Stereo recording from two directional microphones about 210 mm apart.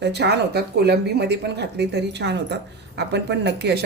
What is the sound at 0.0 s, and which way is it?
Speech, 55° right (ahead or behind).